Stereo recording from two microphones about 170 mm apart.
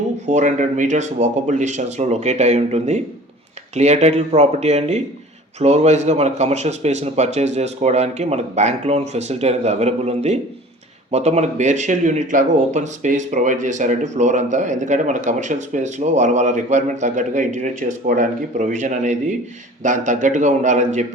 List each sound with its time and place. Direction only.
0.3 s a man's voice: 45° right (ahead or behind)